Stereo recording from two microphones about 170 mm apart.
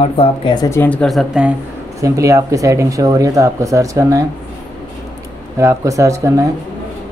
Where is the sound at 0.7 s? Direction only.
10° left (ahead or behind).